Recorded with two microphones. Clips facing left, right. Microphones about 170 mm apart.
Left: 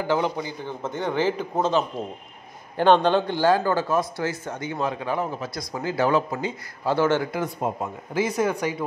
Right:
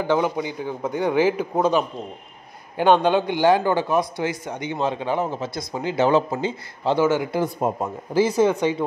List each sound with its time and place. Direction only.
0.2 s a man's voice: 15° right (ahead or behind)
7.0 s a man's voice: 10° right (ahead or behind)
7.6 s a man's voice: 45° right (ahead or behind)
8.1 s a man's voice: 30° right (ahead or behind)